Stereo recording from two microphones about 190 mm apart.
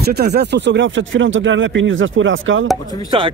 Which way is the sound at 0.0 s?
60° right (ahead or behind).